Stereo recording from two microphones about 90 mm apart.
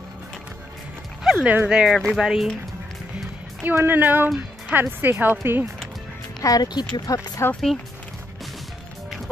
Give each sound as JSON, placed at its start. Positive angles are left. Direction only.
{"t": 1.2, "sound": "dog", "side_deg": -10}
{"t": 1.7, "sound": "speech", "side_deg": -10}
{"t": 3.6, "sound": "speech", "side_deg": -25}
{"t": 6.4, "sound": "speech", "side_deg": 45}
{"t": 7.4, "sound": "speech", "side_deg": 30}